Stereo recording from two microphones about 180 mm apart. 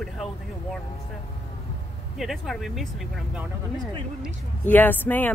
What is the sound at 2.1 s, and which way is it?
Speech, centre (ahead or behind).